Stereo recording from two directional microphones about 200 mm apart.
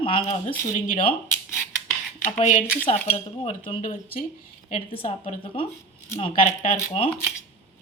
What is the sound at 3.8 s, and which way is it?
Speech, 45° left (ahead or behind).